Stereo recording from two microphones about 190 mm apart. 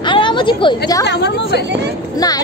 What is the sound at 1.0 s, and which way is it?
Speech, 65° left (ahead or behind).